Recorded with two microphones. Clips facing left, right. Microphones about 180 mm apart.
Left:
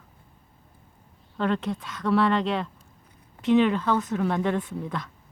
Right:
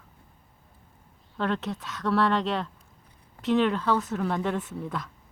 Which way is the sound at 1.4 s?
5° left (ahead or behind).